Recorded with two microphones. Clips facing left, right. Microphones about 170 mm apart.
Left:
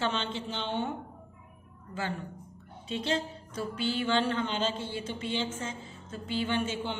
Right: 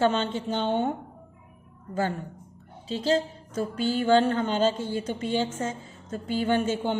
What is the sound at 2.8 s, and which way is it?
A woman's voice, 35° right (ahead or behind).